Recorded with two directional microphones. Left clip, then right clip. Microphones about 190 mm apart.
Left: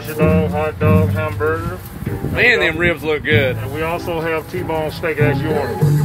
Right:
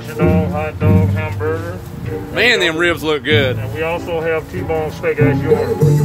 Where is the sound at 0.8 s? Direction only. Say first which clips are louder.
Left 2 dB; 55° left (ahead or behind).